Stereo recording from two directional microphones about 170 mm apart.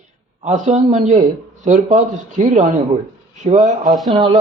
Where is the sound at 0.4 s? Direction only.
45° right (ahead or behind).